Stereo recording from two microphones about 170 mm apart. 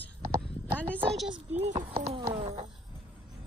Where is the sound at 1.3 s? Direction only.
40° right (ahead or behind).